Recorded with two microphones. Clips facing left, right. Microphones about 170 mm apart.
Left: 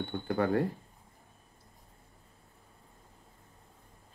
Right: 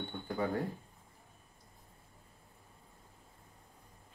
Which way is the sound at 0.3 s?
75° left (ahead or behind).